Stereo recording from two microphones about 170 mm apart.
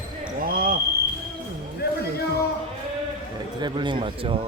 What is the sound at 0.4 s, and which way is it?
Basketball bounce, 60° right (ahead or behind).